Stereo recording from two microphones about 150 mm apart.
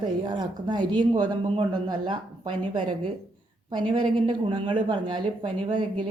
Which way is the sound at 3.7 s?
35° right (ahead or behind).